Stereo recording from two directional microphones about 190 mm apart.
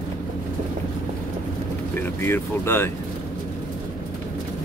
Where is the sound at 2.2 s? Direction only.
10° left (ahead or behind).